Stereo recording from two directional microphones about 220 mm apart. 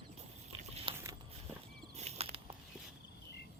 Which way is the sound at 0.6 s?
25° right (ahead or behind).